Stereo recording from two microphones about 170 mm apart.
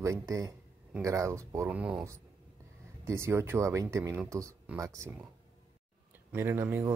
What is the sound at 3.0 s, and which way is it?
Speech, 15° right (ahead or behind).